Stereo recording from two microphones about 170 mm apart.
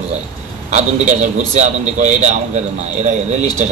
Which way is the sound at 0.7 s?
45° right (ahead or behind).